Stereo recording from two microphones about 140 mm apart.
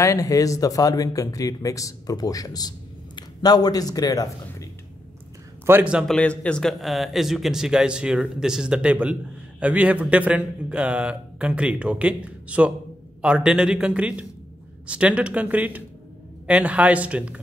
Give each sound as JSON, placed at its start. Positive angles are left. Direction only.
{"t": 0.0, "sound": "a man's voice", "side_deg": 25}
{"t": 5.7, "sound": "a man's voice", "side_deg": -10}
{"t": 6.0, "sound": "a man's voice", "side_deg": 10}